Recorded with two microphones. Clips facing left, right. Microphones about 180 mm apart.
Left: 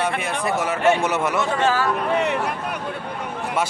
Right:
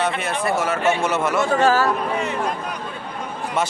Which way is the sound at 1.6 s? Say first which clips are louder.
Right 4 dB; 40° right (ahead or behind).